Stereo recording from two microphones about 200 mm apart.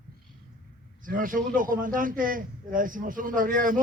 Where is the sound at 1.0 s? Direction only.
45° right (ahead or behind).